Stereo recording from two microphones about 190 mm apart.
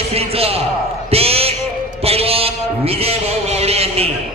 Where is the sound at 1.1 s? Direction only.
30° right (ahead or behind).